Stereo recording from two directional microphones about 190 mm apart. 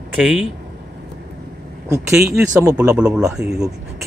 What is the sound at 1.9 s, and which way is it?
Speech, 15° right (ahead or behind).